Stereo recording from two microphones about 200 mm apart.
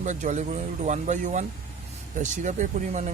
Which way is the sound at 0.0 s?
40° right (ahead or behind).